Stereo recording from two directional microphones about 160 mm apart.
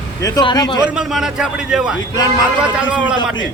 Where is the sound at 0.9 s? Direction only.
5° right (ahead or behind).